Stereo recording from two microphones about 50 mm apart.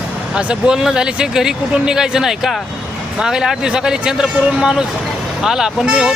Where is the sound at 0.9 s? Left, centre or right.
Centre.